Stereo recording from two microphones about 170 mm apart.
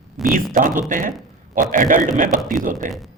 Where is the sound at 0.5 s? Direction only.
50° right (ahead or behind).